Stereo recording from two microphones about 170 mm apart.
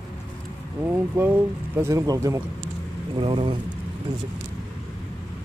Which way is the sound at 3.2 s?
30° right (ahead or behind).